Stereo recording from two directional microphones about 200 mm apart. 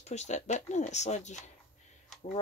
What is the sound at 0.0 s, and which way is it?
Speech, 35° left (ahead or behind).